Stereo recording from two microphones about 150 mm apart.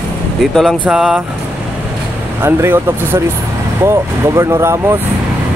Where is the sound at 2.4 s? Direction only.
15° right (ahead or behind).